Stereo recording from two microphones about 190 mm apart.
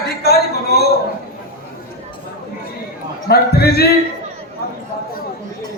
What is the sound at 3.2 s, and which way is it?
Speech, 55° left (ahead or behind).